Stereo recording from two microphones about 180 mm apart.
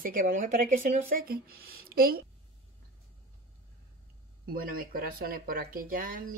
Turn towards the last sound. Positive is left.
turn(degrees=-50)  # may be behind; listen again after turning